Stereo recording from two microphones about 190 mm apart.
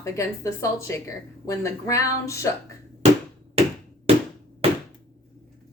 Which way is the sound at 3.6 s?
30° right (ahead or behind).